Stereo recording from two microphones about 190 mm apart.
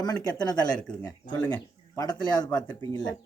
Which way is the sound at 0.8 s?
5° left (ahead or behind).